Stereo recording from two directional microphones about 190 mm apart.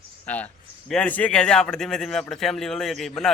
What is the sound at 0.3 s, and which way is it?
A man's voice, 10° left (ahead or behind).